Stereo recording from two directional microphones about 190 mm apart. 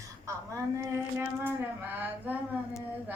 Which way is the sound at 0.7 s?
10° right (ahead or behind).